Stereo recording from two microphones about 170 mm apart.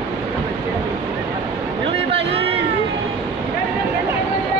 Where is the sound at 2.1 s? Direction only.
35° right (ahead or behind).